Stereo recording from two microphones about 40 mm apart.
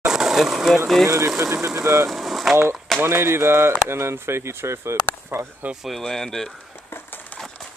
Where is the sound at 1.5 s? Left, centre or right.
Right.